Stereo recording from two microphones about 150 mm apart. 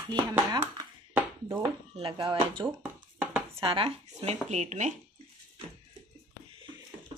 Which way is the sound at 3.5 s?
35° right (ahead or behind).